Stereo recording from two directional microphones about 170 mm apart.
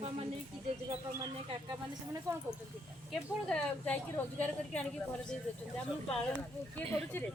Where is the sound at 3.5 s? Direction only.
10° left (ahead or behind).